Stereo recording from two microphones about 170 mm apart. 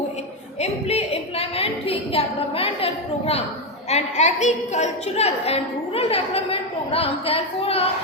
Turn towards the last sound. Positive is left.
turn(degrees=35)  # may be behind; listen again after turning